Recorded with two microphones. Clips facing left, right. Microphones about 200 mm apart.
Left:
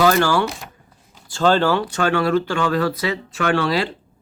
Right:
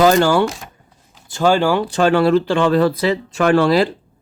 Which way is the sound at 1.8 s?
30° right (ahead or behind).